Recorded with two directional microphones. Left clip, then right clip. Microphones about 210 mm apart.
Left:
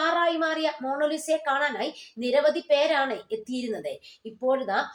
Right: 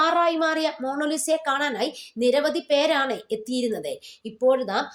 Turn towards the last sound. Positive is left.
turn(degrees=-45)  # may be behind; listen again after turning